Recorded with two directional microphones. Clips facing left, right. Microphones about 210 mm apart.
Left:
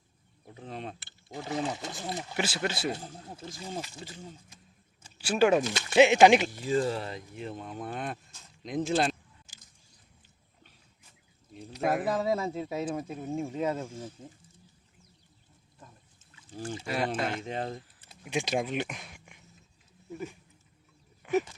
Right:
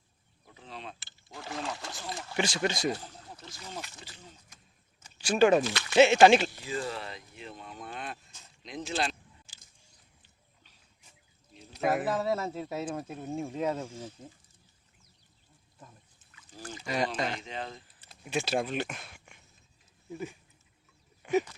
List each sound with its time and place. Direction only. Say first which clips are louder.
0.5 s speech: left 5 dB; 50° left (ahead or behind)
1.3 s pour: left 5 dB; 20° left (ahead or behind)
2.0 s speech: left 4 dB; 20° left (ahead or behind)
2.3 s speech: right 3 dB; 5° left (ahead or behind)
2.9 s a sound: even; 25° left (ahead or behind)
5.1 s speech: right 1 dB; 10° left (ahead or behind)
6.5 s speech: left 7 dB; 40° left (ahead or behind)
11.8 s speech: even; 5° right (ahead or behind)
12.2 s speech: left 2 dB; 10° left (ahead or behind)
16.8 s speech: even; 5° left (ahead or behind)
17.4 s speech: left 5 dB; 50° left (ahead or behind)
18.3 s speech: even; 15° left (ahead or behind)
20.1 s speech: even; 10° right (ahead or behind)
21.2 s a sound: even; centre (ahead or behind)